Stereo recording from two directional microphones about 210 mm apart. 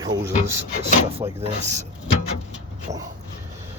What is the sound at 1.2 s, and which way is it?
Speech, 20° right (ahead or behind).